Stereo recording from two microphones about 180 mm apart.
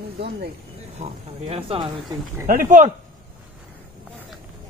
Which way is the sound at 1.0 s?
35° right (ahead or behind).